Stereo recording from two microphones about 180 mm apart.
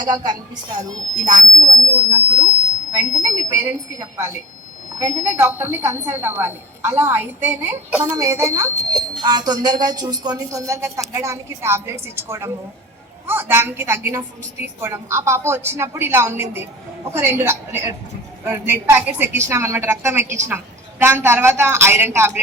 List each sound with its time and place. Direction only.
0.0 s a woman's voice: 25° right (ahead or behind)
4.9 s a woman's voice: 15° right (ahead or behind)